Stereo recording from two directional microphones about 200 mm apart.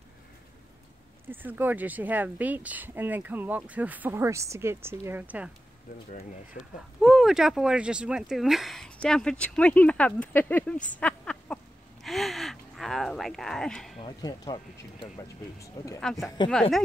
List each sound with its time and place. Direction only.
1.3 s speech: 10° right (ahead or behind)
6.5 s speech: 50° left (ahead or behind)
7.0 s speech: centre (ahead or behind)
11.0 s a sound: 5° left (ahead or behind)
14.0 s speech: 20° left (ahead or behind)
16.0 s speech: centre (ahead or behind)